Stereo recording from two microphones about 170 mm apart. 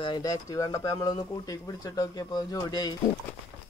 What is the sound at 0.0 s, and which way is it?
Speech, 25° left (ahead or behind).